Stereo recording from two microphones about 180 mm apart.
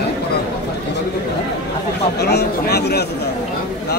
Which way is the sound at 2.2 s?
65° left (ahead or behind).